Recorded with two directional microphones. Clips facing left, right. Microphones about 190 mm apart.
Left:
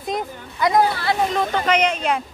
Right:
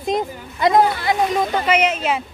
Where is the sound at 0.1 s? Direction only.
25° right (ahead or behind).